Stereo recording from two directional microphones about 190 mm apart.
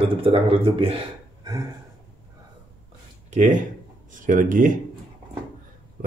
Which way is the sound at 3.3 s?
40° right (ahead or behind).